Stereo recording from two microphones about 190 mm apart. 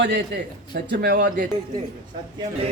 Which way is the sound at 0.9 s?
60° right (ahead or behind).